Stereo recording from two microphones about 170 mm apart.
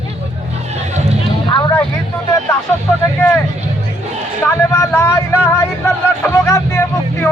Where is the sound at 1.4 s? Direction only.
30° left (ahead or behind).